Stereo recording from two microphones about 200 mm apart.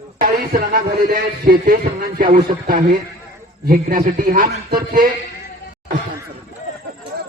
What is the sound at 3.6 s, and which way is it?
A man's voice, 45° right (ahead or behind).